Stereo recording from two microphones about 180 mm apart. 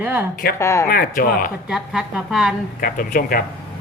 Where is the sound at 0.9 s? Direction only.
55° left (ahead or behind).